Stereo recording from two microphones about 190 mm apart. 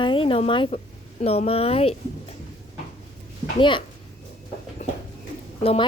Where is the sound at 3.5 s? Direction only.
25° left (ahead or behind).